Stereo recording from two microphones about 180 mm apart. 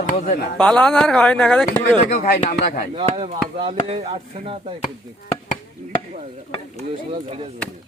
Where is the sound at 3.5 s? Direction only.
30° right (ahead or behind).